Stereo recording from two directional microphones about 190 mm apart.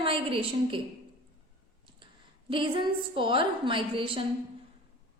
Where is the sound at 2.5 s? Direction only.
25° right (ahead or behind).